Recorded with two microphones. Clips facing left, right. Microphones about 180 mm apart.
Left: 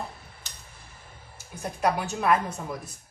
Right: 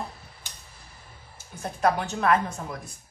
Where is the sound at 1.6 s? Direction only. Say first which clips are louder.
Right 2 dB; 10° left (ahead or behind).